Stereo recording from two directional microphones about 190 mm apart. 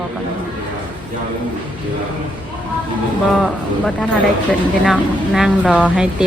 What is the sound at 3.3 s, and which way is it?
Speech, centre (ahead or behind).